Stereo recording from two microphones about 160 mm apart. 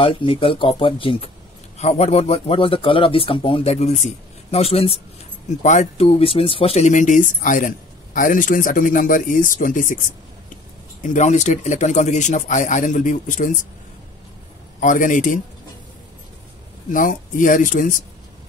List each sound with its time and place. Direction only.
0.0 s speech: 35° left (ahead or behind); by 9.9 s 55° left (ahead or behind)
11.0 s speech: 50° left (ahead or behind)
14.8 s speech: 55° left (ahead or behind)
16.9 s speech: 55° left (ahead or behind)